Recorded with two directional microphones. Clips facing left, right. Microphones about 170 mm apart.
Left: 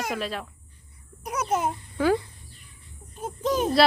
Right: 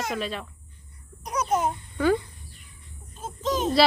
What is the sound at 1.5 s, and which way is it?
Speech, 5° left (ahead or behind).